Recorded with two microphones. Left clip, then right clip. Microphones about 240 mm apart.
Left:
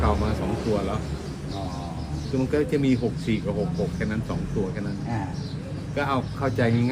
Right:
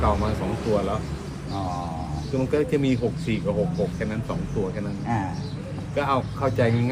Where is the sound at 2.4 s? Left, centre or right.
Centre.